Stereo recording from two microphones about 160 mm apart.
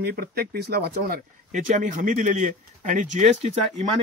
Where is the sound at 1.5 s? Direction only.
55° right (ahead or behind).